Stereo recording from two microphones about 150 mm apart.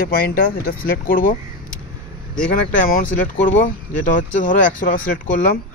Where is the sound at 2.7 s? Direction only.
65° left (ahead or behind).